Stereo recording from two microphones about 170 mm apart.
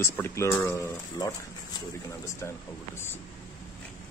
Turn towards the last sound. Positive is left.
turn(degrees=15)  # may be behind; listen again after turning